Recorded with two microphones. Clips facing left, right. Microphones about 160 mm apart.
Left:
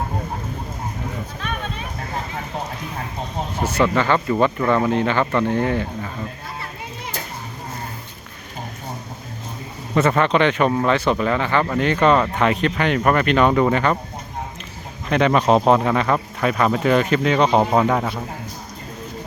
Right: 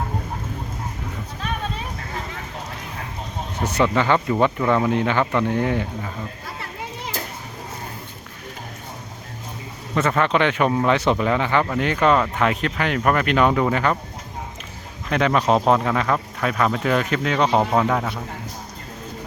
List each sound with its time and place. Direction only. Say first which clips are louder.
3.6 s speech: left 1 dB; 20° right (ahead or behind)
9.9 s speech: left 3 dB; 5° left (ahead or behind)
15.1 s speech: left 3 dB; centre (ahead or behind)
17.6 s speech: left 2 dB; 10° left (ahead or behind)